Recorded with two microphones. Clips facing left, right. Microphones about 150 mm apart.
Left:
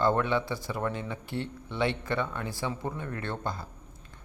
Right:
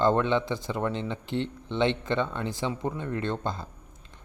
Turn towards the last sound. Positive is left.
turn(degrees=-20)  # may be behind; listen again after turning